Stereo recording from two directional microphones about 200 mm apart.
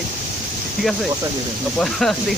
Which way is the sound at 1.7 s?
Centre (ahead or behind).